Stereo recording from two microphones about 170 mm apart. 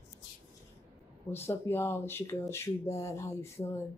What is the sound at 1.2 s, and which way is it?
Speech, 15° left (ahead or behind).